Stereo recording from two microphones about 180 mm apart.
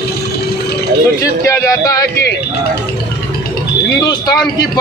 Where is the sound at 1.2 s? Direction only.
20° left (ahead or behind).